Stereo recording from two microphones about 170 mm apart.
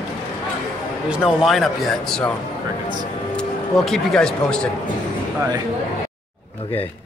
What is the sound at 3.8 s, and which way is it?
Speech, 5° left (ahead or behind).